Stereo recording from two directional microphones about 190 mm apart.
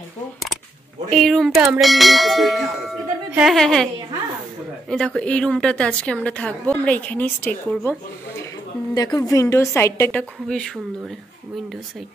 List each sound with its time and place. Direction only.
1.1 s clang: centre (ahead or behind)
4.8 s a woman's voice: 5° left (ahead or behind)
8.9 s a woman's voice: 20° left (ahead or behind)